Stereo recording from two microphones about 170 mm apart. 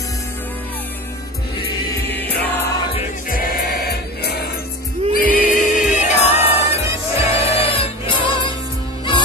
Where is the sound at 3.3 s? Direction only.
65° left (ahead or behind).